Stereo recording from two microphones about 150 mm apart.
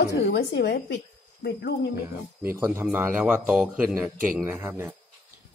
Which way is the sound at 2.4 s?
15° right (ahead or behind).